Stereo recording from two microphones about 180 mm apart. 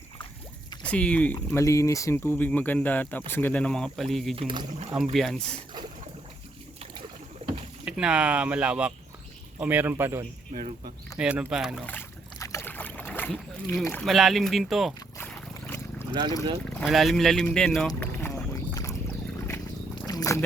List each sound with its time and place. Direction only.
0.8 s speech: 5° left (ahead or behind)
4.4 s speech: 30° right (ahead or behind)
4.9 s speech: centre (ahead or behind)
7.9 s speech: 5° right (ahead or behind)
10.5 s speech: 55° right (ahead or behind)
11.2 s speech: 5° right (ahead or behind)
11.9 s boat: 15° left (ahead or behind)
14.0 s speech: centre (ahead or behind)
15.2 s boat: 10° left (ahead or behind)
16.6 s speech: centre (ahead or behind)
18.2 s a sound: 15° left (ahead or behind)
20.1 s cat: 20° left (ahead or behind)